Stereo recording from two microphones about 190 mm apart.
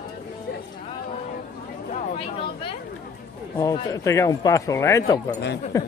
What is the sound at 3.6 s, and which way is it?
Speech, 15° left (ahead or behind).